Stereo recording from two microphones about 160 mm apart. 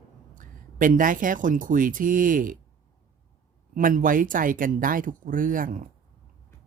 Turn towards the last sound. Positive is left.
turn(degrees=-55)  # may be behind; listen again after turning